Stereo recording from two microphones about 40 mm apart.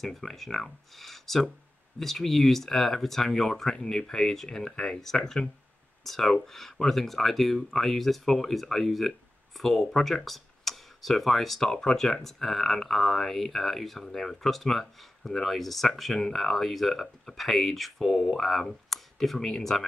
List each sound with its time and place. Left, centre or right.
0.0 s speech: centre
10.2 s tick-tock: centre
11.6 s speech: left
12.0 s speech: centre